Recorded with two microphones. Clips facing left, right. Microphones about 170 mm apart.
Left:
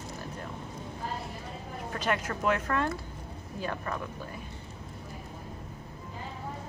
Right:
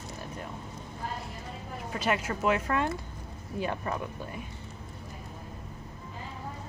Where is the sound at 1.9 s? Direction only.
10° right (ahead or behind).